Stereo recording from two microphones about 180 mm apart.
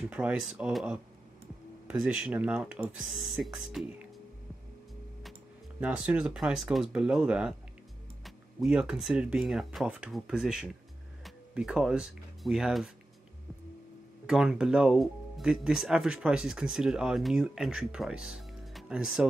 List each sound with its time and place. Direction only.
0.0 s speech: 5° right (ahead or behind)
5.8 s speech: 5° right (ahead or behind)
14.2 s speech: 5° right (ahead or behind)